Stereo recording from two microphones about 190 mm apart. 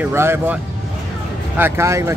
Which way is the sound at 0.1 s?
15° right (ahead or behind).